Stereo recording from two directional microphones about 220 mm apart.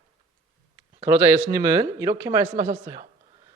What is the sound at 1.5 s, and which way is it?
Speech, 10° right (ahead or behind).